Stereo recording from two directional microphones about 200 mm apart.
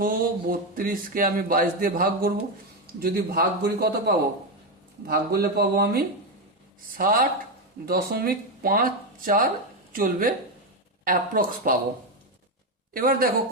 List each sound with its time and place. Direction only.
0.0 s speech: 45° right (ahead or behind)
12.9 s a woman's voice: 45° right (ahead or behind)